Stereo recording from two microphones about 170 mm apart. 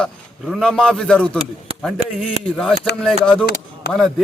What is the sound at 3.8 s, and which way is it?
Speech, 75° left (ahead or behind).